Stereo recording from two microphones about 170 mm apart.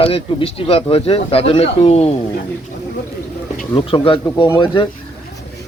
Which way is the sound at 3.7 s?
30° left (ahead or behind).